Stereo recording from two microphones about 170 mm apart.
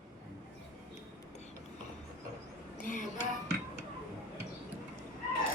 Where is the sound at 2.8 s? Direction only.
50° left (ahead or behind).